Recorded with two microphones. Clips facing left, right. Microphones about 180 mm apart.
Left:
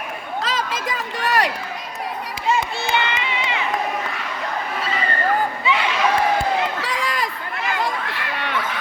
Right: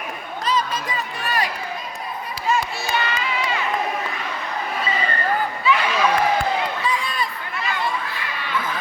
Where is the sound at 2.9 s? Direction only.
25° left (ahead or behind).